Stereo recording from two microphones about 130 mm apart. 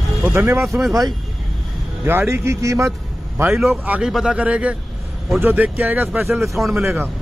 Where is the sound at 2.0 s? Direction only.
15° right (ahead or behind).